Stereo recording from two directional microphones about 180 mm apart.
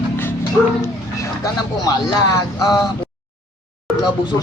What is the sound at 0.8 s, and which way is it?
Speech, 20° left (ahead or behind).